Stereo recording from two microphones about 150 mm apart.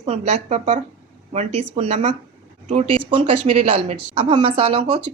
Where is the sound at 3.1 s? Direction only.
35° right (ahead or behind).